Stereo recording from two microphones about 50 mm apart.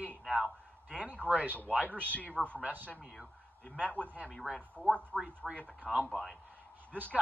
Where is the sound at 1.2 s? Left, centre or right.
Left.